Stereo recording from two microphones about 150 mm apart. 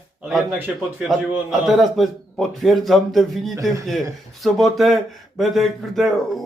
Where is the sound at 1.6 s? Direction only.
Centre (ahead or behind).